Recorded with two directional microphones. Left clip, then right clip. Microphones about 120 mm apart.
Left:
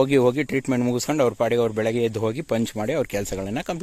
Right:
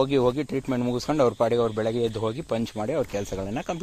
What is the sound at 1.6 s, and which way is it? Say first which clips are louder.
Speech: left 3 dB; 75° left (ahead or behind).